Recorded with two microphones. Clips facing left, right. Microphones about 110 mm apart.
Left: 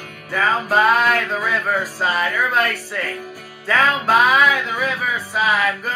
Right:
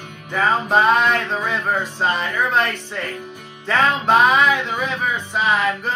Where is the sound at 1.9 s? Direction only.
5° left (ahead or behind).